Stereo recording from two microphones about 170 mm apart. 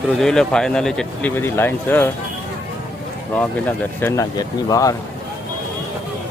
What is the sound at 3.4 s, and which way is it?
Speech, 10° left (ahead or behind).